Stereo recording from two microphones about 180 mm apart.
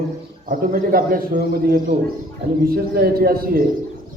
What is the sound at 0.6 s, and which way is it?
A man's voice, 50° right (ahead or behind).